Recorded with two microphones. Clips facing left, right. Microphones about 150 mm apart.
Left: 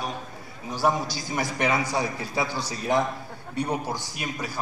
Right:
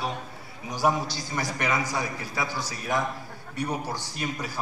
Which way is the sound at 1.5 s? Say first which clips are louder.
Left 3 dB; 25° left (ahead or behind).